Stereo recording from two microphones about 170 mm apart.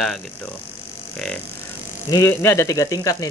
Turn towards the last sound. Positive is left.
turn(degrees=20)  # may be behind; listen again after turning